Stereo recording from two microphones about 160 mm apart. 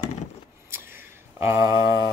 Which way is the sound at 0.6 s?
15° right (ahead or behind).